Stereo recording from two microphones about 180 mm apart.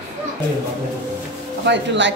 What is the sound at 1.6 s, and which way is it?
Speech, 80° right.